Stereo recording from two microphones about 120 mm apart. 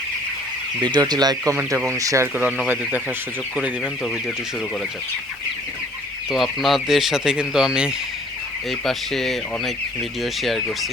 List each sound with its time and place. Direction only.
0.8 s speech: 35° right (ahead or behind); by 2.5 s 15° right (ahead or behind)
6.3 s speech: centre (ahead or behind)